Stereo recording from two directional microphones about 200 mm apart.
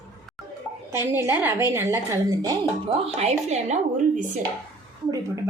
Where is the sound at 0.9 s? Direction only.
10° right (ahead or behind).